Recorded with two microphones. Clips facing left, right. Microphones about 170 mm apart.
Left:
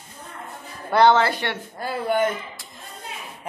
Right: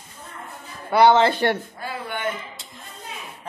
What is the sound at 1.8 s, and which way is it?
Speech, 40° left (ahead or behind).